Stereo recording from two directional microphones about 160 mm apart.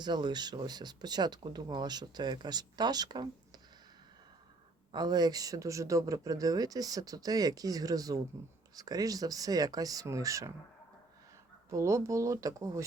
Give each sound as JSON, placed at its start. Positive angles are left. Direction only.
{"t": 0.0, "sound": "speech", "side_deg": -25}
{"t": 4.9, "sound": "speech", "side_deg": -25}
{"t": 11.7, "sound": "speech", "side_deg": -20}